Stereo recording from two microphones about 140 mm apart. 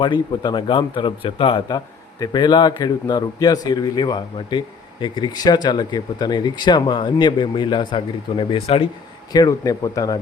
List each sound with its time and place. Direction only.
0.0 s a man's voice: 35° left (ahead or behind)
9.3 s a man's voice: 25° left (ahead or behind)